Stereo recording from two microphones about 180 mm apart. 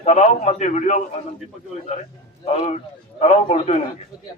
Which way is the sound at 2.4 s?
35° left (ahead or behind).